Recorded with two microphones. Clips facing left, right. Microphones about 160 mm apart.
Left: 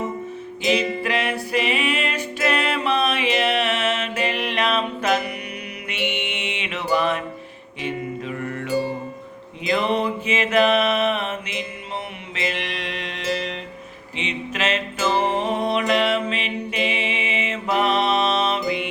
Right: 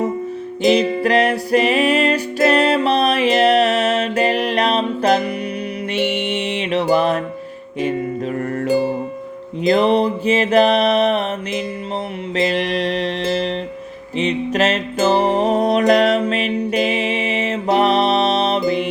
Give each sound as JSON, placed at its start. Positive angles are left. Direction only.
{"t": 0.6, "sound": "music", "side_deg": -35}
{"t": 9.6, "sound": "mantra", "side_deg": -35}
{"t": 12.3, "sound": "music", "side_deg": -35}